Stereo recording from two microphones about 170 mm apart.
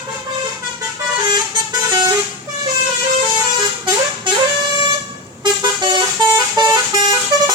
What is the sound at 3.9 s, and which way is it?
Vehicle, 25° right (ahead or behind).